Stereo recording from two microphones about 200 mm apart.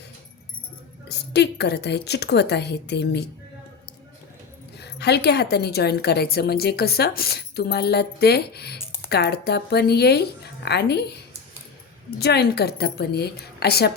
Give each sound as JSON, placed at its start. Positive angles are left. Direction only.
{"t": 1.0, "sound": "a woman's voice", "side_deg": 55}
{"t": 4.8, "sound": "a woman's voice", "side_deg": 55}
{"t": 12.2, "sound": "a woman's voice", "side_deg": 55}